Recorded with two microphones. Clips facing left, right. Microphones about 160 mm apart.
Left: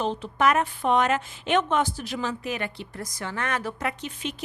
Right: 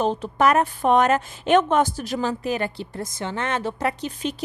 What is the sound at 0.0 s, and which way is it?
A woman's voice, 45° right (ahead or behind).